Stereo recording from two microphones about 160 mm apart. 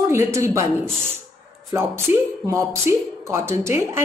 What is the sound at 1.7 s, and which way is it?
Speech, 15° right (ahead or behind).